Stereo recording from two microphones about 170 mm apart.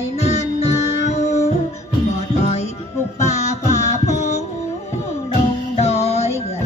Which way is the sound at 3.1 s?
40° left (ahead or behind).